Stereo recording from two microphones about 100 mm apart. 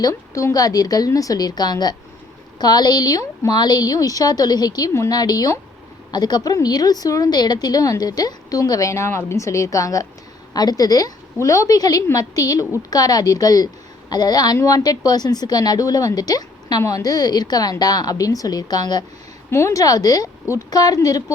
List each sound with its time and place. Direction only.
0.0 s a woman's voice: 30° left (ahead or behind)
19.5 s a woman's voice: 25° left (ahead or behind)